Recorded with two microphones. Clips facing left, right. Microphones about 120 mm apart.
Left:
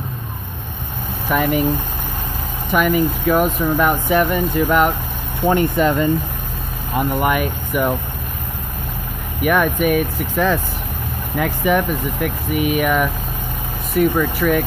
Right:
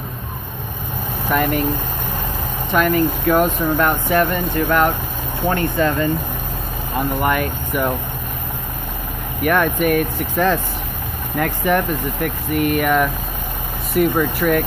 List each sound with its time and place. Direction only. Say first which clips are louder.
1.3 s speech: left 1 dB; 5° left (ahead or behind)
2.7 s speech: even; 10° left (ahead or behind)
7.2 s speech: left 1 dB; 10° left (ahead or behind)
9.4 s speech: left 1 dB; 5° left (ahead or behind)
13.9 s speech: even; 5° right (ahead or behind)